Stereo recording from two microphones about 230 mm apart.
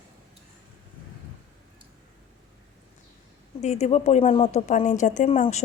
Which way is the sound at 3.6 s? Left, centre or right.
Left.